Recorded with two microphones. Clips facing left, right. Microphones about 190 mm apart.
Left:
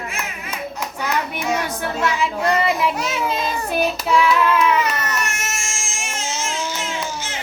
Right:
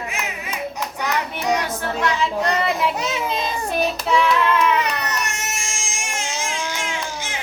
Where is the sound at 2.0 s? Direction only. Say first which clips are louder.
Left 1 dB; 5° left (ahead or behind).